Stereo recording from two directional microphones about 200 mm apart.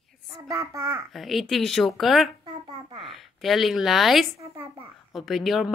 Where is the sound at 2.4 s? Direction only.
20° right (ahead or behind).